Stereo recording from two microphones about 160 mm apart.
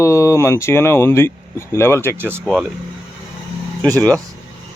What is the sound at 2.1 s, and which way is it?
Speech, 10° right (ahead or behind).